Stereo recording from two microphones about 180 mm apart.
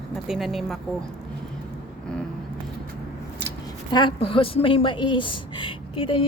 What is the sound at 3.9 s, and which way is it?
A woman's voice, 30° left (ahead or behind).